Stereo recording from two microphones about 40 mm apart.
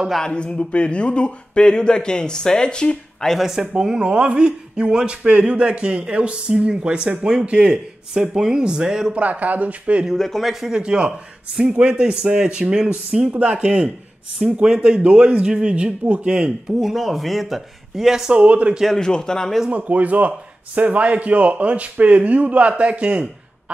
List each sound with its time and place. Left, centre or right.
0.2 s speech: left
3.3 s speech: centre
4.0 s a man's voice: right
9.1 s speech: right
10.1 s speech: centre
10.4 s speech: centre
10.8 s a man's voice: right
13.3 s a man's voice: right
16.8 s speech: centre
18.3 s speech: right
18.9 s speech: centre
19.7 s speech: right